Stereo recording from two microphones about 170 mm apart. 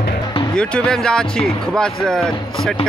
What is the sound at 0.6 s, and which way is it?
Speech, 5° left (ahead or behind).